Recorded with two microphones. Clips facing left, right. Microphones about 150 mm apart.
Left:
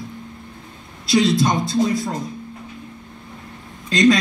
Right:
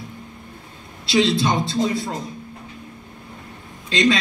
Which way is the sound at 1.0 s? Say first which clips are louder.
Left 2 dB; 25° right (ahead or behind).